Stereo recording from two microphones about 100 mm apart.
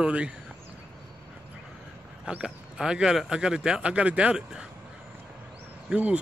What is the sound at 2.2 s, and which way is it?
Speech, 10° right (ahead or behind).